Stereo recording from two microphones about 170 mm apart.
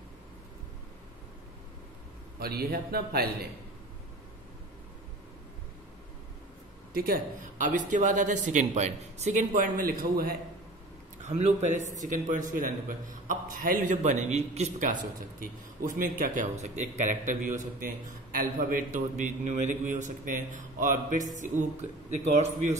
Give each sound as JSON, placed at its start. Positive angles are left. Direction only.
{"t": 2.4, "sound": "speech", "side_deg": -65}
{"t": 6.9, "sound": "a man's voice", "side_deg": -60}
{"t": 11.2, "sound": "a man's voice", "side_deg": -40}
{"t": 14.8, "sound": "a man's voice", "side_deg": -50}
{"t": 22.3, "sound": "a man's voice", "side_deg": -40}